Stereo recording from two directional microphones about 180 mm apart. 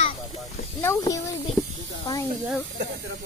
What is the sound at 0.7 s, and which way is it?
Speech, 15° left (ahead or behind).